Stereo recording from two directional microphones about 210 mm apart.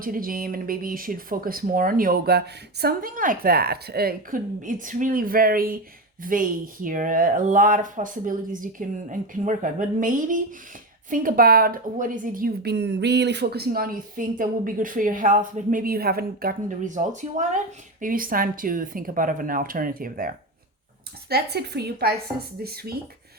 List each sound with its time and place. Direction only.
0.0 s a woman's voice: 40° right (ahead or behind)